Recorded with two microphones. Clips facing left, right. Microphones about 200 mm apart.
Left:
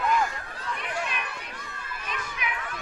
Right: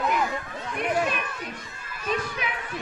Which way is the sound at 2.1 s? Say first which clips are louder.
Right 7 dB; 35° right (ahead or behind).